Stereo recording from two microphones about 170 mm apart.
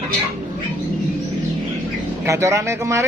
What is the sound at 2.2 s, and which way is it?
Speech, 15° right (ahead or behind).